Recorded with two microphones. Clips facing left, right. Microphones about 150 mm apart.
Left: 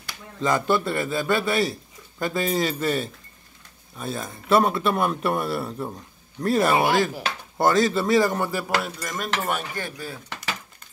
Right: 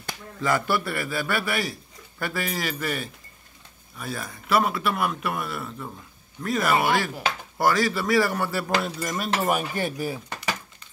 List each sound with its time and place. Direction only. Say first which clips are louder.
0.4 s speech: left 3 dB; 20° left (ahead or behind)
8.6 s cutlery: right 1 dB; centre (ahead or behind)
9.8 s speech: right 5 dB; 20° right (ahead or behind)